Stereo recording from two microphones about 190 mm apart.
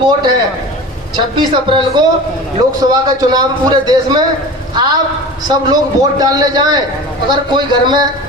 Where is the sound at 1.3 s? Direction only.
25° right (ahead or behind).